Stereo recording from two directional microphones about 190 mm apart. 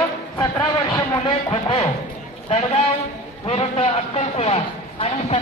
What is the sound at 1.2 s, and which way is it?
A man's voice, 25° left (ahead or behind).